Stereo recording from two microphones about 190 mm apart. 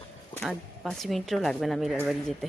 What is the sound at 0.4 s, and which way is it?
Speech, centre (ahead or behind).